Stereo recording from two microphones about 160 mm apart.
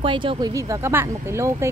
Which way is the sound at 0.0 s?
30° right (ahead or behind).